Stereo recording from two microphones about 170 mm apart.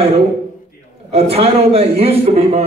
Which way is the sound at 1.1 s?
35° right (ahead or behind).